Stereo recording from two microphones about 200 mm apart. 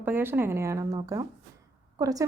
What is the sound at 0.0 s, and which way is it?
A woman's voice, 10° right (ahead or behind).